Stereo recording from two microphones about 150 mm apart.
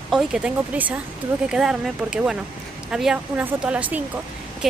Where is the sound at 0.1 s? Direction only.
5° right (ahead or behind).